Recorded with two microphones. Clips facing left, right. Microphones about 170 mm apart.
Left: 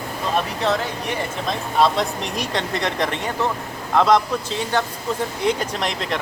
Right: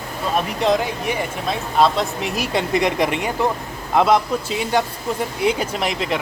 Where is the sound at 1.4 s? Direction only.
5° right (ahead or behind).